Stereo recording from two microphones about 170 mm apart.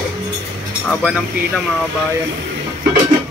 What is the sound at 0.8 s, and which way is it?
Speech, centre (ahead or behind).